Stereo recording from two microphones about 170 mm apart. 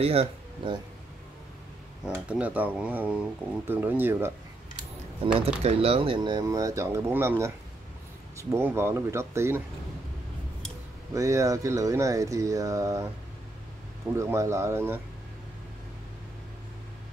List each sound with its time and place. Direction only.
0.0 s speech: 35° right (ahead or behind)
2.0 s speech: 5° right (ahead or behind)
5.2 s speech: 30° right (ahead or behind); by 9.6 s 15° right (ahead or behind)
11.1 s speech: 20° right (ahead or behind)
14.1 s speech: 15° right (ahead or behind)